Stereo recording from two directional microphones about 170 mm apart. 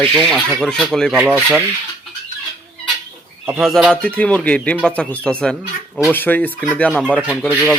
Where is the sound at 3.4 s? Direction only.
5° right (ahead or behind).